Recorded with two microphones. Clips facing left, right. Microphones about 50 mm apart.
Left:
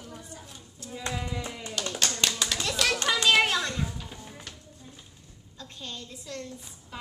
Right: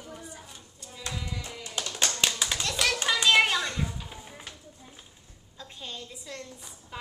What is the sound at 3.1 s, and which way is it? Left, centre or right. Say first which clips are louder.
A child's voice: right 1 dB; centre.